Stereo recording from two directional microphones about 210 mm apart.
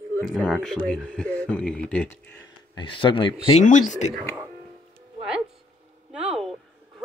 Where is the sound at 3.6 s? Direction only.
35° left (ahead or behind).